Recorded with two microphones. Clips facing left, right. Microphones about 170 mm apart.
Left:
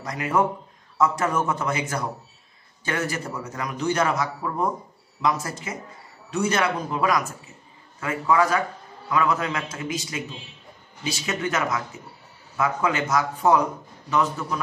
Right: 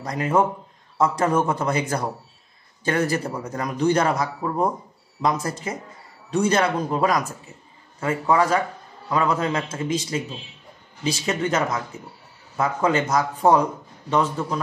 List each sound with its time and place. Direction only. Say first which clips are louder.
0.0 s a man's voice: right 2 dB; 30° right (ahead or behind)
11.2 s a man's voice: right 2 dB; 30° right (ahead or behind)